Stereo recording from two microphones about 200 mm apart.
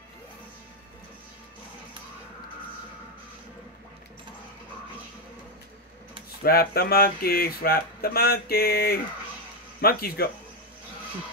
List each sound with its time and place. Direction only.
6.4 s speech: 50° left (ahead or behind)